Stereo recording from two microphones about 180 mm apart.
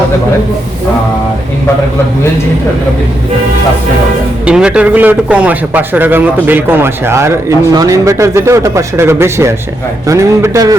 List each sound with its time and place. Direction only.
4.4 s a man's voice: 5° right (ahead or behind)